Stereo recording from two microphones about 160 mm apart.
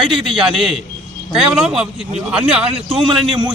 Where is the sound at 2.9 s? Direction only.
30° right (ahead or behind).